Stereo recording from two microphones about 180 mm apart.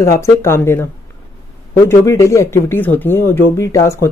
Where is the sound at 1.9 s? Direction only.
15° left (ahead or behind).